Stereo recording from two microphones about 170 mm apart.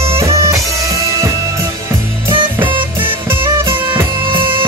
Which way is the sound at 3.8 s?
30° right (ahead or behind).